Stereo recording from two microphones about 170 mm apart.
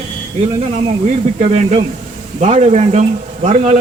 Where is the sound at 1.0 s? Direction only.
40° right (ahead or behind).